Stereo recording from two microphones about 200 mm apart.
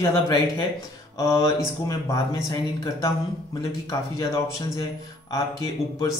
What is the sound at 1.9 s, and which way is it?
A man's voice, 15° left (ahead or behind).